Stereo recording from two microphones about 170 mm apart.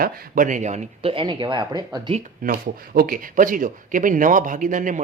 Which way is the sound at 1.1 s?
30° right (ahead or behind).